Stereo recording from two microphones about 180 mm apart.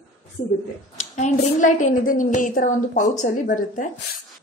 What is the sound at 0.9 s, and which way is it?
A woman's voice, 40° left (ahead or behind).